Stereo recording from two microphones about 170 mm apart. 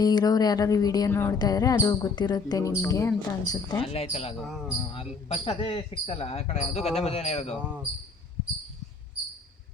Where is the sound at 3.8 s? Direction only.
35° left (ahead or behind).